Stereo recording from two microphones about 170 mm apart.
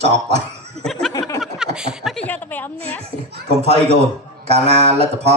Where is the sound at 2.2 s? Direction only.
10° left (ahead or behind).